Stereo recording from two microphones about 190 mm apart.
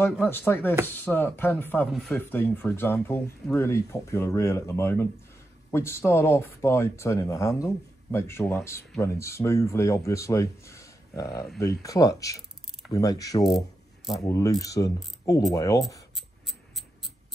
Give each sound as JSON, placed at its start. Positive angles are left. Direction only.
{"t": 0.0, "sound": "speech", "side_deg": 10}
{"t": 1.9, "sound": "speech", "side_deg": 0}
{"t": 2.1, "sound": "speech", "side_deg": 10}
{"t": 12.9, "sound": "mechanisms", "side_deg": 20}
{"t": 14.2, "sound": "speech", "side_deg": 15}
{"t": 16.2, "sound": "a sound", "side_deg": 0}